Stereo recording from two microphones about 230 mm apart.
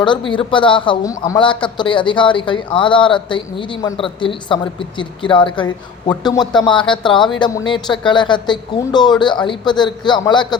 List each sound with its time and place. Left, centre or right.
0.0 s speech: left